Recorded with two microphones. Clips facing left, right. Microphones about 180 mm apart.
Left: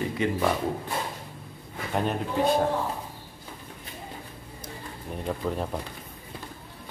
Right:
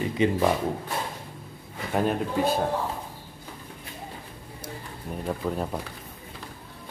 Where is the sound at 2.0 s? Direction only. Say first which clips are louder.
Right 2 dB; centre (ahead or behind).